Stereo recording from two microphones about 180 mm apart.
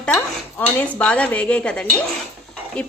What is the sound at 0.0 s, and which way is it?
A woman's voice, 10° left (ahead or behind).